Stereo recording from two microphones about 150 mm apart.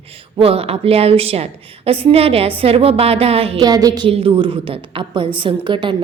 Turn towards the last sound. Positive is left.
turn(degrees=-35)  # may be behind; listen again after turning